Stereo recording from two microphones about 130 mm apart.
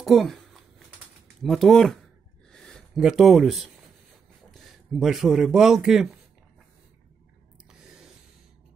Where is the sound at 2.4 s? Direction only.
5° left (ahead or behind).